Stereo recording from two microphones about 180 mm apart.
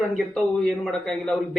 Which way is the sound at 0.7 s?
5° left (ahead or behind).